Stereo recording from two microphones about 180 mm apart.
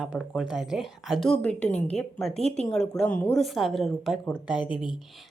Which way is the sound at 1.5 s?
40° left (ahead or behind).